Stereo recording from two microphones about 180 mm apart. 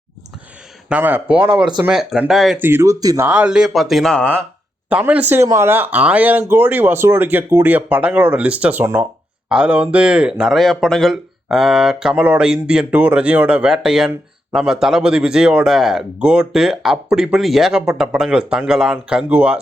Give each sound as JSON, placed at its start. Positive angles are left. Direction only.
{"t": 0.9, "sound": "speech", "side_deg": -10}
{"t": 2.6, "sound": "speech", "side_deg": -15}
{"t": 3.2, "sound": "speech", "side_deg": -5}
{"t": 4.9, "sound": "speech", "side_deg": -5}